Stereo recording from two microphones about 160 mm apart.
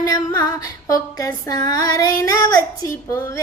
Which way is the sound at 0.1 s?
25° left (ahead or behind).